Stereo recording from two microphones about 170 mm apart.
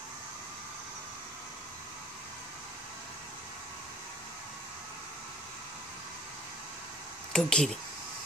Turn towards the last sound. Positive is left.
turn(degrees=5)  # may be behind; listen again after turning